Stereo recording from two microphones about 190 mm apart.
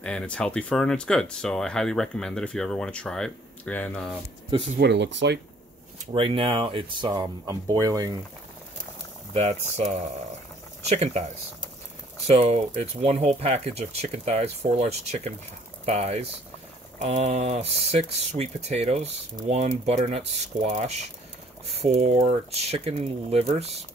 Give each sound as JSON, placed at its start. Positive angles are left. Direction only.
{"t": 0.0, "sound": "speech", "side_deg": 5}
{"t": 4.7, "sound": "speech", "side_deg": -65}
{"t": 6.1, "sound": "speech", "side_deg": -30}
{"t": 9.3, "sound": "speech", "side_deg": -35}
{"t": 12.3, "sound": "speech", "side_deg": -30}